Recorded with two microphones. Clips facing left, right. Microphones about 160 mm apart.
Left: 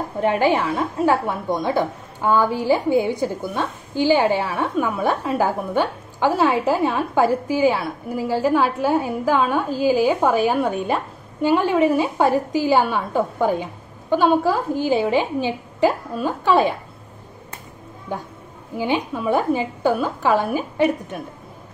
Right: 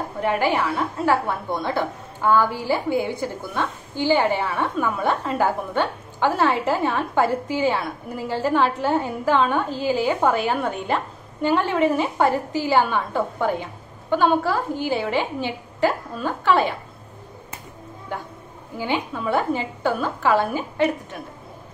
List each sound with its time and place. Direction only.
0.2 s a woman's voice: 20° left (ahead or behind)
18.8 s a woman's voice: 15° left (ahead or behind)